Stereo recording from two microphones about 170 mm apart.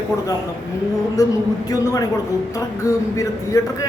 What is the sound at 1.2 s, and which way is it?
A man's voice, 20° left (ahead or behind).